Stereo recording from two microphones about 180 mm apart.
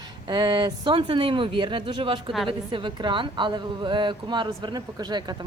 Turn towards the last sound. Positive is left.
turn(degrees=-25)  # may be behind; listen again after turning